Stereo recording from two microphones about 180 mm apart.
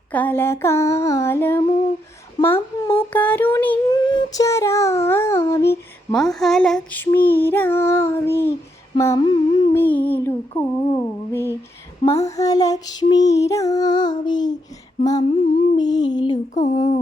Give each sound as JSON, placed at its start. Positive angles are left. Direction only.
{"t": 0.1, "sound": "female singing", "side_deg": 10}
{"t": 2.4, "sound": "a sound", "side_deg": 10}
{"t": 3.8, "sound": "a sound", "side_deg": 25}
{"t": 6.1, "sound": "female singing", "side_deg": 0}
{"t": 9.0, "sound": "child singing", "side_deg": 20}
{"t": 9.7, "sound": "female singing", "side_deg": 10}
{"t": 12.2, "sound": "child singing", "side_deg": 20}
{"t": 16.6, "sound": "speech", "side_deg": 35}